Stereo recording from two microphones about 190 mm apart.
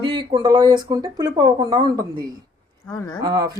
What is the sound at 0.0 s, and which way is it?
Speech, 25° right (ahead or behind).